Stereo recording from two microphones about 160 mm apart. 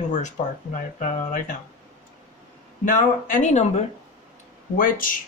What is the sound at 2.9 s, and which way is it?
Speech, 55° left (ahead or behind).